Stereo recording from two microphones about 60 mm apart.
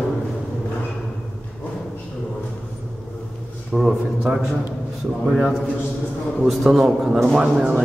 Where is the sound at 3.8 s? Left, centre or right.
Centre.